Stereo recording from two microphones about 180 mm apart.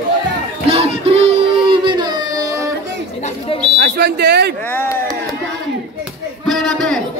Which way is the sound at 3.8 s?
65° right (ahead or behind).